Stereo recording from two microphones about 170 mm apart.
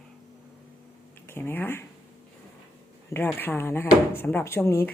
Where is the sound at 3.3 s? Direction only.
15° left (ahead or behind).